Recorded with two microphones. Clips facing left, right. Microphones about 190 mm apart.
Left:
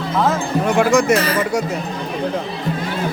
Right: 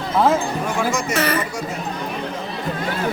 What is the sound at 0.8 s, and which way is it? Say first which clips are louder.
Speech: left 9 dB; 65° left (ahead or behind).